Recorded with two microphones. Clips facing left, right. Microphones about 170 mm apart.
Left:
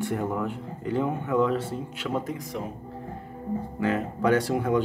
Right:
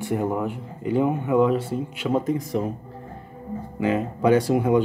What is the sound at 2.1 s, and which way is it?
Speech, 30° right (ahead or behind).